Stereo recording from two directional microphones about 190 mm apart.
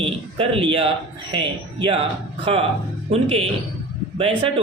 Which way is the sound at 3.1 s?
30° right (ahead or behind).